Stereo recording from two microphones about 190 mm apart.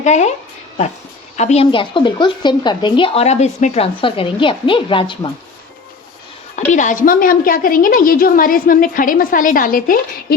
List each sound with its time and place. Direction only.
0.0 s speech: 35° left (ahead or behind)
1.4 s speech: 35° left (ahead or behind)
6.7 s a woman's voice: 40° left (ahead or behind)